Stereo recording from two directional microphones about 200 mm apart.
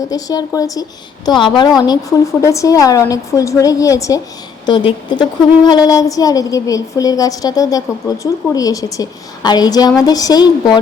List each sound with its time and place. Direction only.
0.1 s a woman's voice: 20° left (ahead or behind)